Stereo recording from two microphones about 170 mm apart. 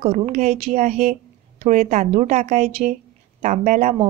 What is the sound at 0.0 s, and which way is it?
A woman's voice, 40° right (ahead or behind).